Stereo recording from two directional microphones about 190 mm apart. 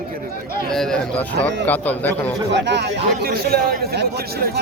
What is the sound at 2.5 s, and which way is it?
Speech, 65° right (ahead or behind).